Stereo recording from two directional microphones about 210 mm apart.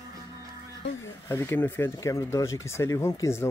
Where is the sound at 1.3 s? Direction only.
10° left (ahead or behind).